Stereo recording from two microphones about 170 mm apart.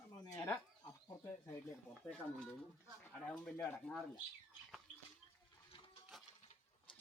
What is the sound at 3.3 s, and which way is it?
Speech, 5° left (ahead or behind).